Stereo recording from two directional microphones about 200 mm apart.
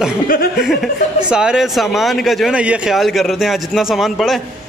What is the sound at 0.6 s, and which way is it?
A man's voice, centre (ahead or behind).